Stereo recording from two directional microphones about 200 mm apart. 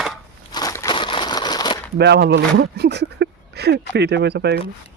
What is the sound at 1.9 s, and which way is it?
Speech, 55° right (ahead or behind).